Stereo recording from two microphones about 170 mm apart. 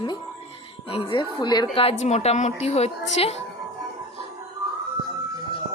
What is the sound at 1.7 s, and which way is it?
Speech, 40° left (ahead or behind).